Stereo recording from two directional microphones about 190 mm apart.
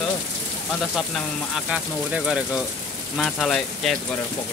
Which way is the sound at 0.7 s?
Centre (ahead or behind).